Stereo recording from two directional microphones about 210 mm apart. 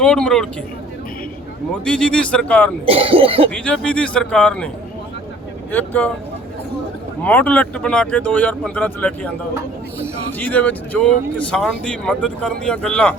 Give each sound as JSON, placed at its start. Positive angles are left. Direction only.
{"t": 0.0, "sound": "speech", "side_deg": 5}
{"t": 1.8, "sound": "speech", "side_deg": 5}
{"t": 2.8, "sound": "speech", "side_deg": -25}
{"t": 3.5, "sound": "speech", "side_deg": 5}
{"t": 5.7, "sound": "speech", "side_deg": 10}
{"t": 7.2, "sound": "speech", "side_deg": 5}
{"t": 10.4, "sound": "speech", "side_deg": 5}